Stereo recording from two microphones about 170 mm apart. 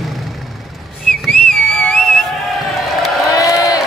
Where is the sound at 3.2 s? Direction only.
20° left (ahead or behind).